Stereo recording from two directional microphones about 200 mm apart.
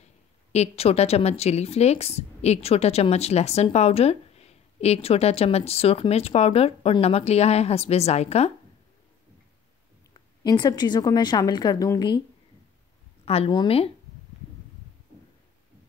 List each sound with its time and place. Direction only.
0.5 s a woman's voice: 30° left (ahead or behind)
10.4 s a woman's voice: 20° left (ahead or behind)
13.2 s a woman's voice: 30° left (ahead or behind)